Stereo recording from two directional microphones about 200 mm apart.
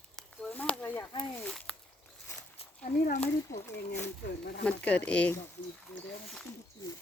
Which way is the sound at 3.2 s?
15° left (ahead or behind).